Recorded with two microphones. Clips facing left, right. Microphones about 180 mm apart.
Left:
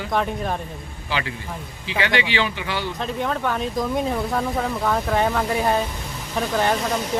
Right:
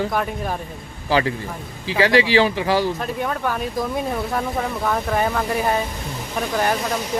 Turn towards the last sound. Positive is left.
turn(degrees=-5)  # may be behind; listen again after turning